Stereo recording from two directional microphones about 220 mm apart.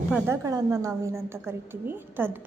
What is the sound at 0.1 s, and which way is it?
A woman's voice, 10° right (ahead or behind).